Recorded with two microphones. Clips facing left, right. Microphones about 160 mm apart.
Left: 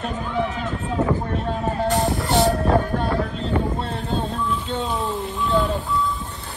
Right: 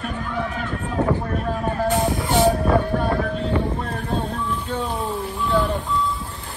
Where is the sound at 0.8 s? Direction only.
30° left (ahead or behind).